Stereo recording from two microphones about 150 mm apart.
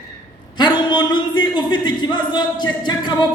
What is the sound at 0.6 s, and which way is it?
A man's voice, 30° left (ahead or behind).